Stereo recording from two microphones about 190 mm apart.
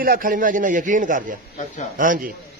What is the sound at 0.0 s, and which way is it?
A man's voice, 50° right (ahead or behind).